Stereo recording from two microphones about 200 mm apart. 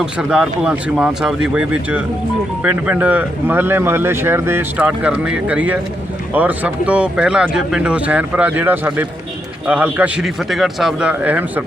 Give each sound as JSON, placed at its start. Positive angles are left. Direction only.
{"t": 0.0, "sound": "speech", "side_deg": -5}